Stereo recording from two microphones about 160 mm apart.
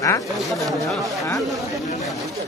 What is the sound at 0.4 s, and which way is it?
Speech, centre (ahead or behind).